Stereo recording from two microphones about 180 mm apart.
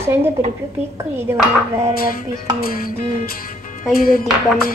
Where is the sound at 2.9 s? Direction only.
50° left (ahead or behind).